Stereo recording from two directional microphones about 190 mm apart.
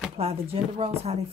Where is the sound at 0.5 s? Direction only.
30° right (ahead or behind).